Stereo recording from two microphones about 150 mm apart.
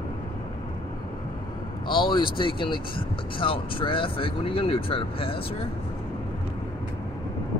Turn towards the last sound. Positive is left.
turn(degrees=35)  # may be behind; listen again after turning